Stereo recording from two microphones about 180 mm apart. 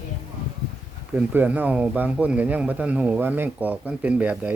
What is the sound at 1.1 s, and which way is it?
Speech, 10° right (ahead or behind).